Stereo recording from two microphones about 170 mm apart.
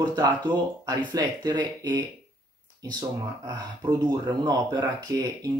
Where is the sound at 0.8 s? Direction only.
25° right (ahead or behind).